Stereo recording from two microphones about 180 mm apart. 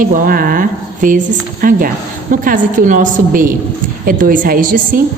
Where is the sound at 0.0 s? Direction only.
50° right (ahead or behind).